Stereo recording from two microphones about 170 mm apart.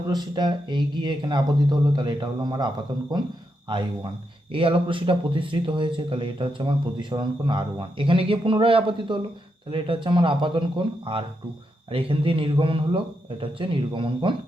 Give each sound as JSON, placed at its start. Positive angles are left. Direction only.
{"t": 0.1, "sound": "speech", "side_deg": -25}